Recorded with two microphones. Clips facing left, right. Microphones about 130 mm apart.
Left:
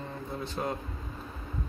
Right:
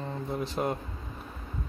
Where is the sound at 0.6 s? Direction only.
25° right (ahead or behind).